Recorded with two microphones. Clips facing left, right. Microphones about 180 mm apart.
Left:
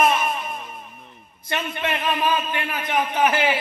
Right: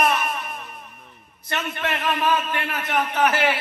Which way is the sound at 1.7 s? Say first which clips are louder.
Even; 20° left (ahead or behind).